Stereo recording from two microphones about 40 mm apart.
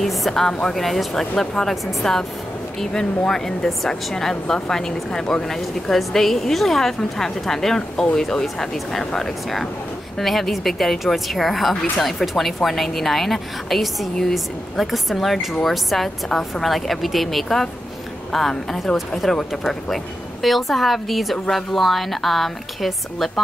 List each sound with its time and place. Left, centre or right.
0.0 s a woman's voice: centre
0.3 s a woman's voice: centre
5.9 s a woman's voice: centre
18.9 s a woman's voice: centre